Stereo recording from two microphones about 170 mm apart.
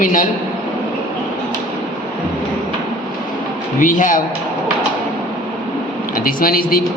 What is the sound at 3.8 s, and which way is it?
Speech, 50° left (ahead or behind).